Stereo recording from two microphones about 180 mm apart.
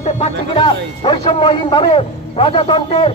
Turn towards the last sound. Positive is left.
turn(degrees=30)  # may be behind; listen again after turning